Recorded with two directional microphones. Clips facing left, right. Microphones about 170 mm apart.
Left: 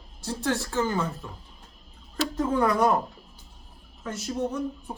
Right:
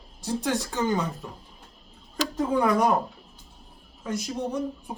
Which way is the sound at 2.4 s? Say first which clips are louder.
Right 1 dB; 10° right (ahead or behind).